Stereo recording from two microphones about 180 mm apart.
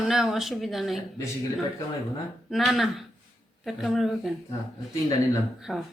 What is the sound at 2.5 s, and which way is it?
A woman's voice, centre (ahead or behind).